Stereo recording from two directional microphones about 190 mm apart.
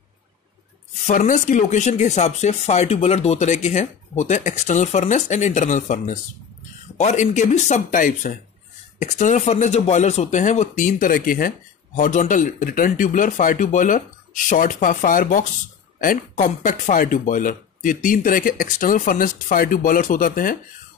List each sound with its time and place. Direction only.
1.0 s speech: 45° left (ahead or behind)